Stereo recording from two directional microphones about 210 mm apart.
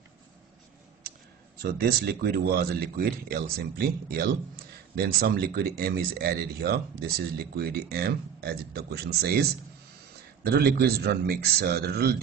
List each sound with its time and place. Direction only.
1.6 s speech: 50° right (ahead or behind)